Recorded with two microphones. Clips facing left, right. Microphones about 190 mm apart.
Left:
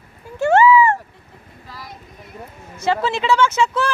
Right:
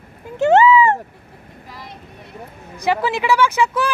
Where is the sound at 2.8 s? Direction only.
15° right (ahead or behind).